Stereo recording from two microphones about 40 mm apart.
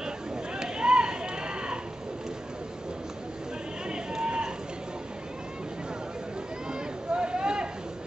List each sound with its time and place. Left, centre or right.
0.6 s chop: right
3.9 s run: centre
6.7 s a sound: right